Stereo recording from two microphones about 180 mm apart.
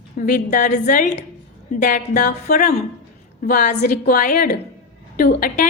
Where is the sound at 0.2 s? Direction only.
45° left (ahead or behind).